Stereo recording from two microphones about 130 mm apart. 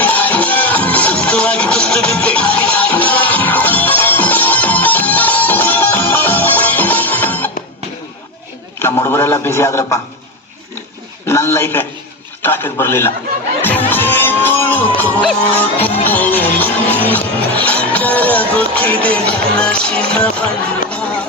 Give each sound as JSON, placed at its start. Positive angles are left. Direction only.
{"t": 0.0, "sound": "music", "side_deg": 10}
{"t": 8.8, "sound": "a sound", "side_deg": 20}
{"t": 11.3, "sound": "a man's voice", "side_deg": 20}
{"t": 19.0, "sound": "music", "side_deg": 10}